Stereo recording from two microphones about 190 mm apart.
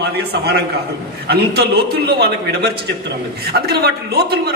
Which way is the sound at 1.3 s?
55° right (ahead or behind).